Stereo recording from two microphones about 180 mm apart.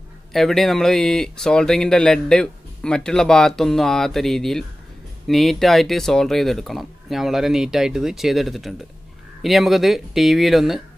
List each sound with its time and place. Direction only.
0.3 s speech: centre (ahead or behind)